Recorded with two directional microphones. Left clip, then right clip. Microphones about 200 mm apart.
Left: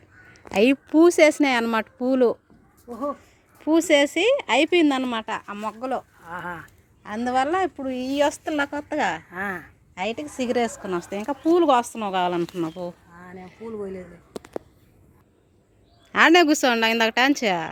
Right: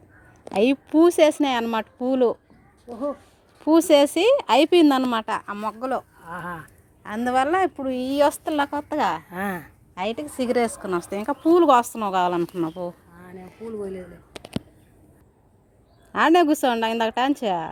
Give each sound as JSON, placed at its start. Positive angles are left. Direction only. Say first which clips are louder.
{"t": 0.5, "sound": "speech", "louder": "left 1 dB", "side_deg": 5}
{"t": 2.9, "sound": "a woman's voice", "louder": "even", "side_deg": -5}
{"t": 6.2, "sound": "speech", "louder": "even", "side_deg": -40}
{"t": 7.0, "sound": "a woman's voice", "louder": "right 1 dB", "side_deg": -5}
{"t": 9.3, "sound": "speech", "louder": "even", "side_deg": -45}
{"t": 9.9, "sound": "a woman's voice", "louder": "right 1 dB", "side_deg": -5}
{"t": 16.1, "sound": "a woman's voice", "louder": "left 2 dB", "side_deg": 0}